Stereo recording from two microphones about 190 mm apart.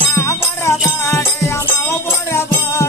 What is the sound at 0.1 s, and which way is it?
Music, 15° left (ahead or behind).